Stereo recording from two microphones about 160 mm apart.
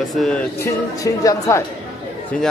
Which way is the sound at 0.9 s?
20° left (ahead or behind).